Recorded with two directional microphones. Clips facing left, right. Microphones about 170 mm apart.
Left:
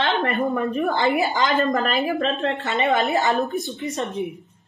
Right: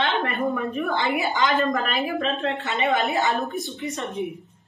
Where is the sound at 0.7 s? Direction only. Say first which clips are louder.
Left 3 dB; 45° left (ahead or behind).